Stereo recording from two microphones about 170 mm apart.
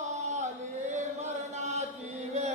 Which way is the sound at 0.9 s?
45° right (ahead or behind).